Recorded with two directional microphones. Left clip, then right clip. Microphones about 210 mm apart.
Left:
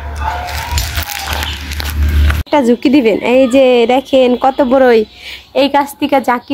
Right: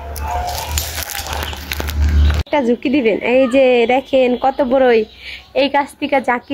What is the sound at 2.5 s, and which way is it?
A woman's voice, 25° left (ahead or behind).